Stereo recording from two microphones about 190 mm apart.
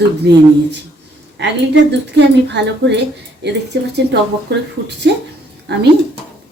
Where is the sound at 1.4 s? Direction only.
65° right (ahead or behind).